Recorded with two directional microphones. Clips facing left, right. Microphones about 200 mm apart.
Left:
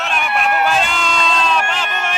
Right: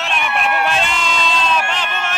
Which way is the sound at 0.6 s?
Centre (ahead or behind).